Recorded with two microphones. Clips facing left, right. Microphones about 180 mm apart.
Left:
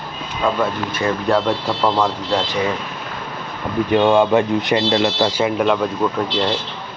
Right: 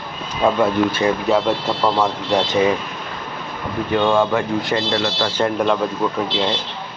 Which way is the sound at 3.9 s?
20° left (ahead or behind).